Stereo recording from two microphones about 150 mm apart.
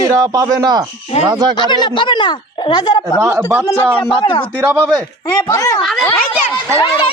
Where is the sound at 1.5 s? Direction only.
30° left (ahead or behind).